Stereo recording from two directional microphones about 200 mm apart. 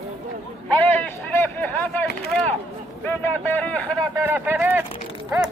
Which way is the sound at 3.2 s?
10° left (ahead or behind).